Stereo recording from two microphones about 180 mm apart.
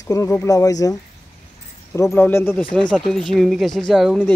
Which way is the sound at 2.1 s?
10° left (ahead or behind).